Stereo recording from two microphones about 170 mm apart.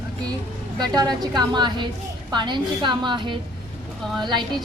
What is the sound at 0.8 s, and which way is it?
Speech, 25° right (ahead or behind).